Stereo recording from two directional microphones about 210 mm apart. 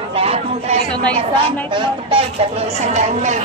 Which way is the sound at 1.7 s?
25° right (ahead or behind).